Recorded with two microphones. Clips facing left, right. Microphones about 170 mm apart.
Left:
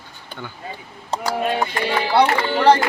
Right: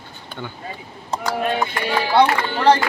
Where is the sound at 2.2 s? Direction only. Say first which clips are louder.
Left 1 dB; 10° left (ahead or behind).